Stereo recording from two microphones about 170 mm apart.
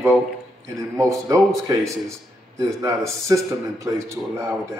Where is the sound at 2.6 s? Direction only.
20° right (ahead or behind).